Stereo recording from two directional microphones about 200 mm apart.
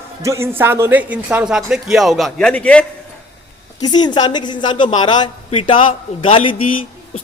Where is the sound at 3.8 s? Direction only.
20° left (ahead or behind).